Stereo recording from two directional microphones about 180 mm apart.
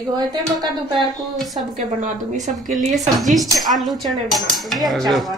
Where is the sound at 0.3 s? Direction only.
25° right (ahead or behind).